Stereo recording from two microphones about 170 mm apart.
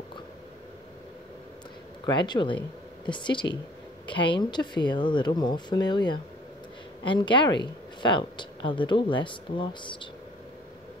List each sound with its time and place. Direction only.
2.0 s speech: 25° left (ahead or behind)